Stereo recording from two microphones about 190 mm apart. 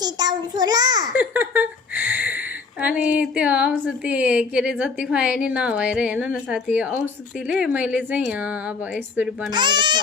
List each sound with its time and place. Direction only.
0.0 s a child's voice: 20° right (ahead or behind)
1.1 s a woman's voice: 10° right (ahead or behind)
9.5 s a child's voice: 25° right (ahead or behind)